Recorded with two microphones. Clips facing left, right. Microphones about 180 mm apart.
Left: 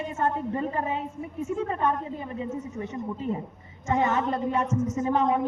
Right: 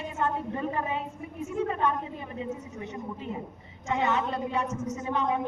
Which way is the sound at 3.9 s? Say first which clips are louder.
Left 3 dB; 45° left (ahead or behind).